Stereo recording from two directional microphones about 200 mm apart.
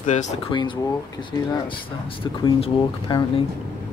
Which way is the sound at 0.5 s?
25° left (ahead or behind).